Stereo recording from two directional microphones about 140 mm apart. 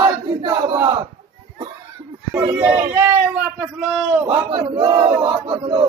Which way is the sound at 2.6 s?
10° right (ahead or behind).